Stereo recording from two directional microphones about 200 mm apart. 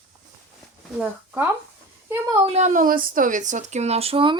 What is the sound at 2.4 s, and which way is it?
Speech, 35° right (ahead or behind).